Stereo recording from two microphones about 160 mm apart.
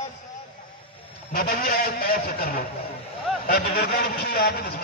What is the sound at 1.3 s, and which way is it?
A man's voice, 70° left (ahead or behind).